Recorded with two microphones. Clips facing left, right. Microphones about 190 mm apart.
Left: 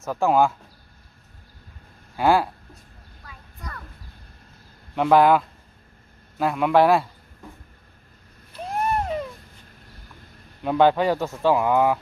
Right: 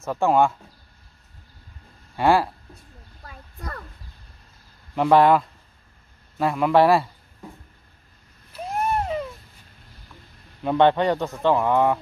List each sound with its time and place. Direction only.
0.0 s speech: centre (ahead or behind)
2.1 s speech: centre (ahead or behind)
3.3 s a sound: 45° right (ahead or behind)
4.9 s speech: centre (ahead or behind)
8.5 s a sound: centre (ahead or behind)
10.6 s speech: centre (ahead or behind)